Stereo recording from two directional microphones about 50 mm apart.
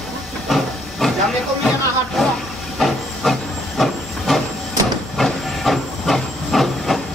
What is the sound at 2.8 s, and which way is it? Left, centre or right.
Hiss, centre.